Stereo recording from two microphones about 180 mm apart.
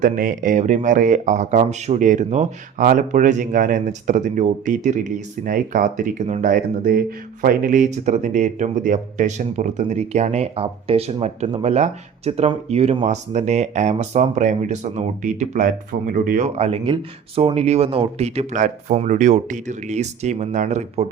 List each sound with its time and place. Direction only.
0.0 s speech: 50° right (ahead or behind)
16.6 s speech: 30° right (ahead or behind)